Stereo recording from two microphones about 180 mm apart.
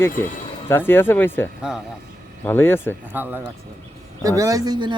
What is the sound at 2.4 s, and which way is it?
Speech, 10° left (ahead or behind).